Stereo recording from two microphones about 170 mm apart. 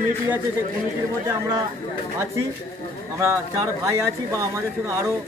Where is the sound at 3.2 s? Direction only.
15° right (ahead or behind).